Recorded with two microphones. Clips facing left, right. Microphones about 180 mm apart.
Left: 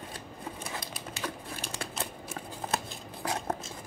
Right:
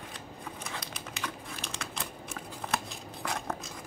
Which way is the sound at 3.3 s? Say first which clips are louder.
Left 3 dB; 25° left (ahead or behind).